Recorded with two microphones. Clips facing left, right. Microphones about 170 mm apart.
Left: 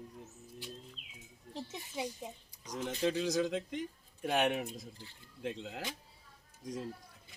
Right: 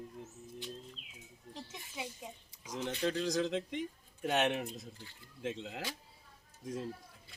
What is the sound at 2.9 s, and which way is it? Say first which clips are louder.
Speech: left 1 dB; 10° left (ahead or behind).